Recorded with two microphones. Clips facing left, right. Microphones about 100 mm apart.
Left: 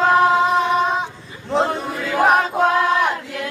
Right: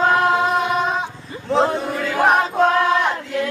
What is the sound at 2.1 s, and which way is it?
Choir, 5° left (ahead or behind).